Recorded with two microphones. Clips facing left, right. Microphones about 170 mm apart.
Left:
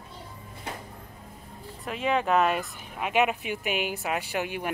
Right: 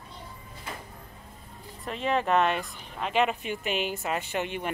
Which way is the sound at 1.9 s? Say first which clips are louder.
Left 1 dB; centre (ahead or behind).